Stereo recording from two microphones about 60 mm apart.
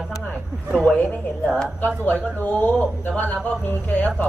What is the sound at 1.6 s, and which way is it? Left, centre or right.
Speech, right.